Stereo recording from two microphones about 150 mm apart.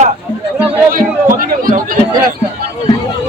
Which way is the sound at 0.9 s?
65° right (ahead or behind).